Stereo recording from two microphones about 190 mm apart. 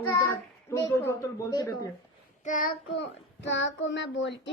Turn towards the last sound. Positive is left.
turn(degrees=70)  # may be behind; listen again after turning